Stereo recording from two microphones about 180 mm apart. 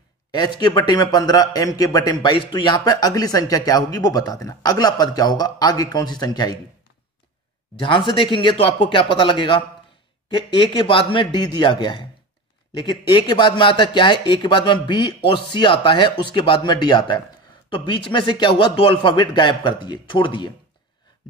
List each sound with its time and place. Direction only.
0.3 s a man's voice: 25° left (ahead or behind)
7.8 s a man's voice: 30° left (ahead or behind)